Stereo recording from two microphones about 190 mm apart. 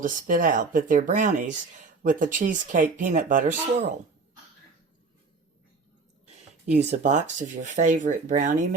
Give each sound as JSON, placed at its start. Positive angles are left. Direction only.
{"t": 0.0, "sound": "speech", "side_deg": -45}
{"t": 7.0, "sound": "speech", "side_deg": -40}